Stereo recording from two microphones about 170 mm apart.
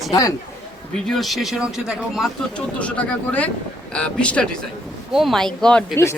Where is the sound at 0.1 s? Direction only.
20° left (ahead or behind).